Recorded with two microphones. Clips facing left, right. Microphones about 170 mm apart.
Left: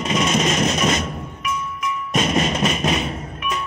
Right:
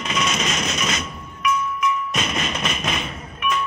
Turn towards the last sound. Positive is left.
turn(degrees=35)  # may be behind; listen again after turning